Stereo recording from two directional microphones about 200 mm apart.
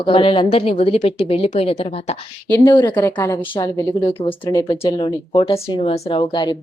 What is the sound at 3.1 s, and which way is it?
A woman's voice, 15° left (ahead or behind).